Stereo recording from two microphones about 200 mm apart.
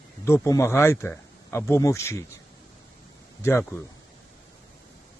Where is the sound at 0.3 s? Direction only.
15° left (ahead or behind).